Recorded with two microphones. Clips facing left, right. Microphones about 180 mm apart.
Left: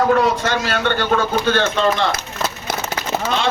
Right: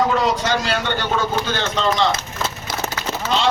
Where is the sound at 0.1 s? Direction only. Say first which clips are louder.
Left 3 dB; 60° left (ahead or behind).